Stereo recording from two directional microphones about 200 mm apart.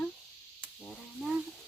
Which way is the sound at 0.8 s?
Centre (ahead or behind).